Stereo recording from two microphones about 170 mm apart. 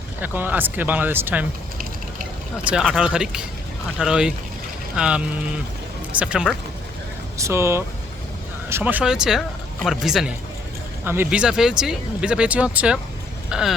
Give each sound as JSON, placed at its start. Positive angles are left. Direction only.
{"t": 0.2, "sound": "speech", "side_deg": -10}
{"t": 2.6, "sound": "speech", "side_deg": -5}
{"t": 7.3, "sound": "speech", "side_deg": -15}
{"t": 11.0, "sound": "speech", "side_deg": -15}